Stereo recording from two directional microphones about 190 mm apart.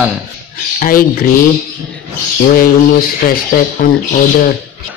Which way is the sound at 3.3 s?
50° left (ahead or behind).